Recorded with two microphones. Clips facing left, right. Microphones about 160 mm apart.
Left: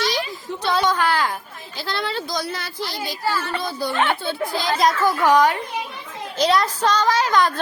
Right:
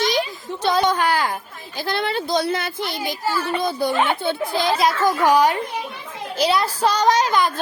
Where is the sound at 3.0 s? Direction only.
20° right (ahead or behind).